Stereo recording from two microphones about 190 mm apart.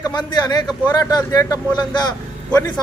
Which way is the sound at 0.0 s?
25° left (ahead or behind).